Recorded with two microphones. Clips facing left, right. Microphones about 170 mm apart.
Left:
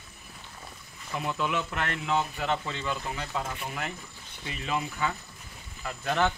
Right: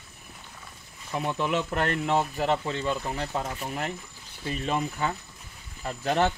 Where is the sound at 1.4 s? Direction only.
40° right (ahead or behind).